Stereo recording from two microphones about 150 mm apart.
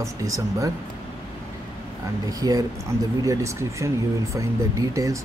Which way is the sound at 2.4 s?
25° right (ahead or behind).